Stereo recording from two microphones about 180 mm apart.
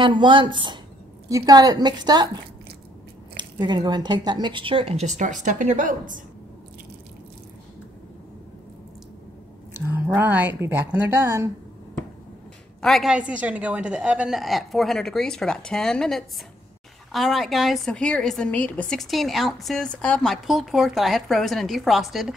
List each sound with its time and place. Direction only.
0.0 s a woman's voice: 25° right (ahead or behind)
3.3 s speech: 25° right (ahead or behind); by 6.2 s 45° right (ahead or behind)
9.8 s speech: 15° right (ahead or behind)
12.8 s a woman's voice: centre (ahead or behind)